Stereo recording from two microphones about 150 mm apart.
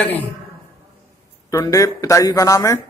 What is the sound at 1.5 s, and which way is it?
Speech, 20° left (ahead or behind).